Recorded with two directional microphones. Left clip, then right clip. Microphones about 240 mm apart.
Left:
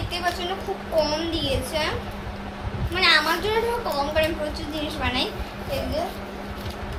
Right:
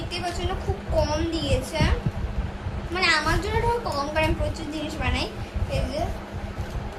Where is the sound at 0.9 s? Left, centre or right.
Centre.